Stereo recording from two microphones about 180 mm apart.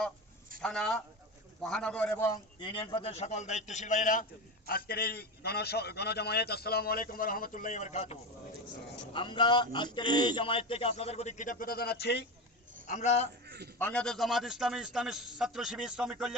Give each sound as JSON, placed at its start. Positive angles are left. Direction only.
{"t": 0.6, "sound": "a man's voice", "side_deg": 0}
{"t": 9.1, "sound": "speech", "side_deg": 25}
{"t": 10.1, "sound": "speech", "side_deg": -45}
{"t": 10.3, "sound": "a man's voice", "side_deg": 30}
{"t": 12.9, "sound": "a man's voice", "side_deg": 40}
{"t": 13.7, "sound": "a man's voice", "side_deg": 10}